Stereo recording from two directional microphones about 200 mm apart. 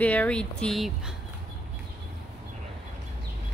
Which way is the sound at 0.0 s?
5° left (ahead or behind).